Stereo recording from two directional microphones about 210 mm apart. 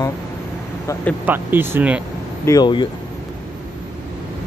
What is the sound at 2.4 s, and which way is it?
Speech, 20° left (ahead or behind).